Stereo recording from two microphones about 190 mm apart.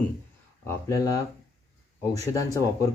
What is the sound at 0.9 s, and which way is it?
Speech, 15° left (ahead or behind).